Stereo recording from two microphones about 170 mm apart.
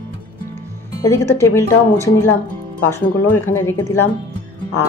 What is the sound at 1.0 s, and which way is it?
Speech, 15° left (ahead or behind).